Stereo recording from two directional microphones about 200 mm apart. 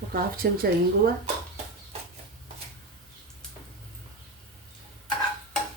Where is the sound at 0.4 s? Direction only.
50° right (ahead or behind).